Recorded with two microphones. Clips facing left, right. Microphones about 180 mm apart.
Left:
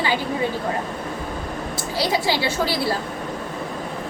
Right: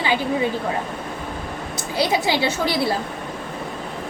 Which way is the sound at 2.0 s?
20° right (ahead or behind).